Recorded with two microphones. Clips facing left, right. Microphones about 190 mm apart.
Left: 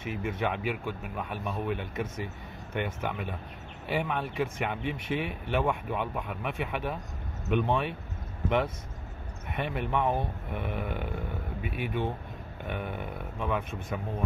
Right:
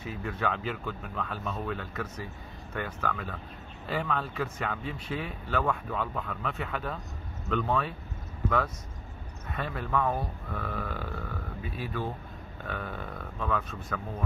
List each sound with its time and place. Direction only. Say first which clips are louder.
0.0 s speech: left 1 dB; 20° left (ahead or behind)
9.5 s speech: left 1 dB; 20° left (ahead or behind)